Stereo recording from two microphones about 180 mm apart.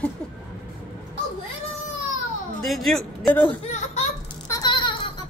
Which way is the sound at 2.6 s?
Centre (ahead or behind).